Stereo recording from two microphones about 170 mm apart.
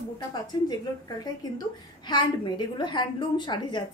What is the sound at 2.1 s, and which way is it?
A woman's voice, 25° left (ahead or behind).